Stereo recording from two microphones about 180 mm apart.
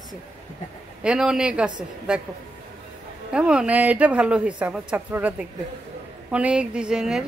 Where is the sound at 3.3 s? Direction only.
5° right (ahead or behind).